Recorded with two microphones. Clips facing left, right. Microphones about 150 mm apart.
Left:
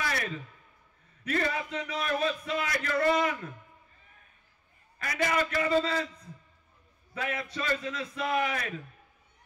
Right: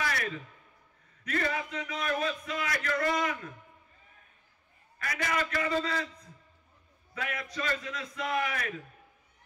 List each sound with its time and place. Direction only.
0.0 s a sound: 30° left (ahead or behind)
1.2 s a man's voice: 30° left (ahead or behind)
4.9 s a man's voice: 25° left (ahead or behind)
7.2 s a man's voice: 25° left (ahead or behind)